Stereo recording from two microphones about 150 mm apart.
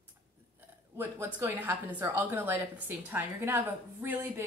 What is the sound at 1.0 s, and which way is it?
A woman's voice, 15° right (ahead or behind).